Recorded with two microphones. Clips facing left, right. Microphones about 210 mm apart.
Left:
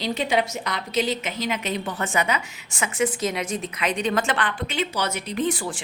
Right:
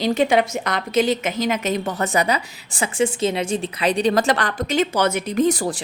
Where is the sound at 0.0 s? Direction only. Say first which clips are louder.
Right 6 dB; 50° right (ahead or behind).